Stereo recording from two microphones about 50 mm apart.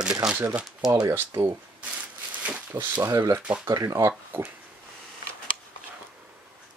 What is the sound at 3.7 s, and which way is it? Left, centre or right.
Speech, right.